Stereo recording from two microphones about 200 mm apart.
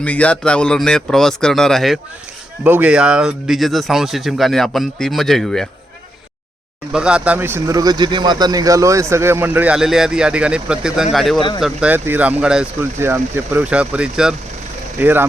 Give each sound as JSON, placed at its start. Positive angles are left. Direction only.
{"t": 0.0, "sound": "speech", "side_deg": 5}
{"t": 6.9, "sound": "a man's voice", "side_deg": -5}
{"t": 11.3, "sound": "speech", "side_deg": 25}
{"t": 11.6, "sound": "a man's voice", "side_deg": -5}